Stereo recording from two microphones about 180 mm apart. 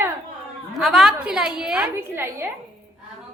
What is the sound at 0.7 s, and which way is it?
A woman's voice, centre (ahead or behind).